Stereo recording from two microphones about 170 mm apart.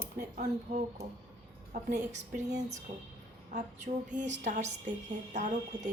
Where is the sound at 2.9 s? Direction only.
40° right (ahead or behind).